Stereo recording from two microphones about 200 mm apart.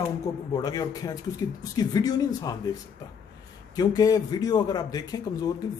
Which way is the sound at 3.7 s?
20° left (ahead or behind).